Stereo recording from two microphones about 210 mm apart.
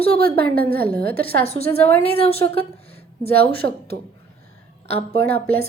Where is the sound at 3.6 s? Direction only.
60° right (ahead or behind).